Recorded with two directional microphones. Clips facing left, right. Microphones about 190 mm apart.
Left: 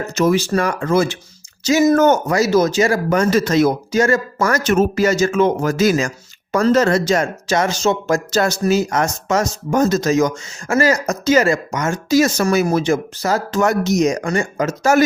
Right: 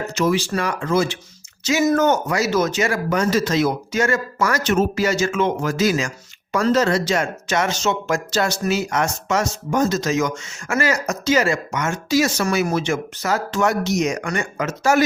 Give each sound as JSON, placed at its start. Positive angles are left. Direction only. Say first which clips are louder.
{"t": 0.1, "sound": "speech", "louder": "left 5 dB", "side_deg": 45}
{"t": 3.2, "sound": "speech", "louder": "left 4 dB", "side_deg": 55}